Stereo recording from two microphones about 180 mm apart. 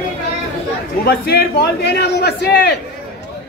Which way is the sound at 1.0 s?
60° left (ahead or behind).